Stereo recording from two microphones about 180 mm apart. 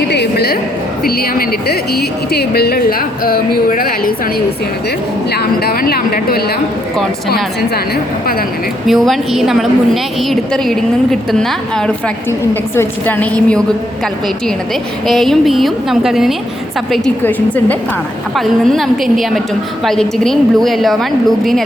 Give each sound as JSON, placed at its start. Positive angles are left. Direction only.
{"t": 0.1, "sound": "a sound", "side_deg": 65}
{"t": 1.0, "sound": "speech", "side_deg": 55}
{"t": 5.3, "sound": "speech", "side_deg": 60}
{"t": 8.9, "sound": "a woman's voice", "side_deg": 0}
{"t": 15.0, "sound": "a woman's voice", "side_deg": 0}